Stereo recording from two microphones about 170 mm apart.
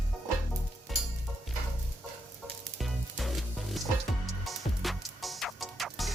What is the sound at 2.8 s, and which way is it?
Music, centre (ahead or behind).